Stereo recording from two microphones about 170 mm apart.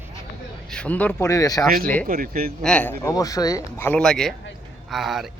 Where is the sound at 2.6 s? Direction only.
5° left (ahead or behind).